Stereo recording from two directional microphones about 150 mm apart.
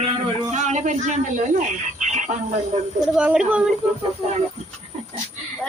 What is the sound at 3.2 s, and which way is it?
Speech, 10° right (ahead or behind).